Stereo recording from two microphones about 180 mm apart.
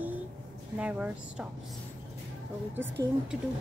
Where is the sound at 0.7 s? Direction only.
5° right (ahead or behind).